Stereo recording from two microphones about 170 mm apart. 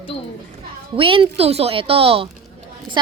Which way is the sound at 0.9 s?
30° right (ahead or behind).